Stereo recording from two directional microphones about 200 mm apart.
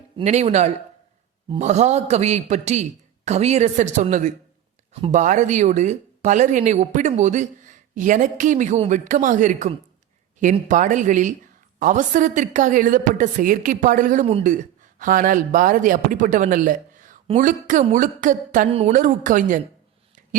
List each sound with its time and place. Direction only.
0.2 s a woman's voice: 35° right (ahead or behind)